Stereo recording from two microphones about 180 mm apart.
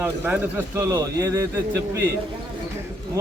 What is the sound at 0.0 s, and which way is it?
A man's voice, 15° right (ahead or behind).